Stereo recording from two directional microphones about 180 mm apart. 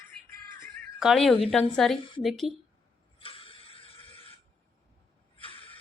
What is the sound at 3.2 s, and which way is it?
Mechanisms, 30° left (ahead or behind).